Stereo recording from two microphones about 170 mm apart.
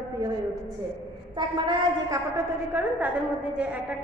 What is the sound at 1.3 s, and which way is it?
Speech, 25° right (ahead or behind).